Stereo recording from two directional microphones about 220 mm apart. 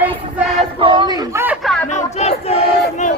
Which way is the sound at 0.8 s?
20° right (ahead or behind).